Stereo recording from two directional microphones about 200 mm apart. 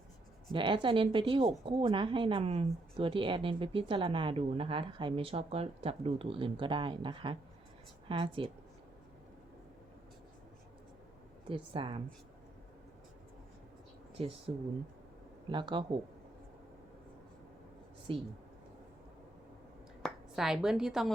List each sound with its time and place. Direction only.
0.5 s a woman's voice: 25° right (ahead or behind)
11.4 s speech: 25° right (ahead or behind)
14.2 s speech: 30° right (ahead or behind)
18.1 s speech: 25° right (ahead or behind)
20.0 s speech: centre (ahead or behind)